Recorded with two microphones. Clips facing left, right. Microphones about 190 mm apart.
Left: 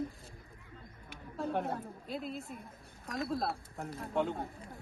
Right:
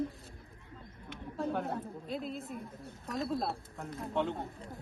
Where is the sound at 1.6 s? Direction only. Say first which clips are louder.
Right 1 dB; centre (ahead or behind).